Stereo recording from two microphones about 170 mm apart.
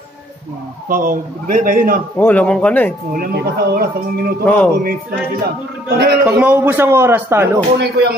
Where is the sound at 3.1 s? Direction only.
60° right (ahead or behind).